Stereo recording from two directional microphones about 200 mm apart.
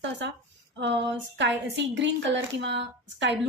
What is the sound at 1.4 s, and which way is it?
A woman's voice, 65° right (ahead or behind).